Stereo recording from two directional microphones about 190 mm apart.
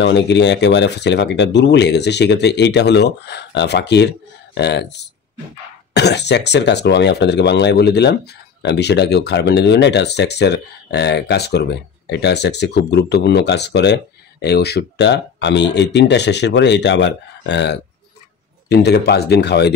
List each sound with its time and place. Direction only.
0.0 s speech: 65° left (ahead or behind)